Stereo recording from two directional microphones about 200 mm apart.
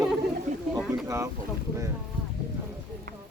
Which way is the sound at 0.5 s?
35° right (ahead or behind).